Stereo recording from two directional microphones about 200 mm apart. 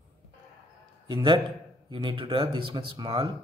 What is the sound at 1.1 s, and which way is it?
A man's voice, 25° right (ahead or behind).